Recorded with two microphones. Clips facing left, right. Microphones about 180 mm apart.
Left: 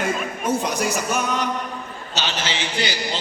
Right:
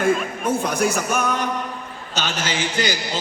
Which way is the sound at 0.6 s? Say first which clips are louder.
Right 2 dB; 50° right (ahead or behind).